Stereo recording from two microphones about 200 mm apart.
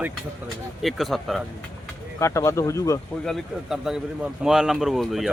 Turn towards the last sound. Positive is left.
turn(degrees=0)  # may be behind; listen again after turning